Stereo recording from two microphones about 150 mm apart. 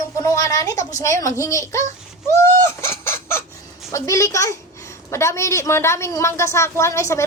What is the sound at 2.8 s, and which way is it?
Chicken, 15° left (ahead or behind).